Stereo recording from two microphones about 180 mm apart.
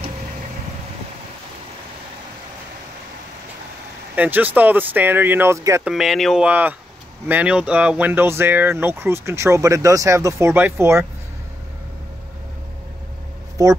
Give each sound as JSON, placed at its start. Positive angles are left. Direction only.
{"t": 4.1, "sound": "speech", "side_deg": -10}
{"t": 5.9, "sound": "speech", "side_deg": 0}
{"t": 13.6, "sound": "speech", "side_deg": -20}